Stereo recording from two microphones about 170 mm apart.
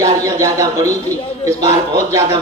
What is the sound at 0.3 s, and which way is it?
Speech, 20° right (ahead or behind).